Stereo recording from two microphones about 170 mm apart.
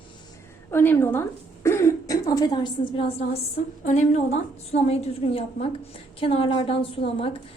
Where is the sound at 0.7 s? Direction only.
15° left (ahead or behind); by 3.1 s 30° left (ahead or behind).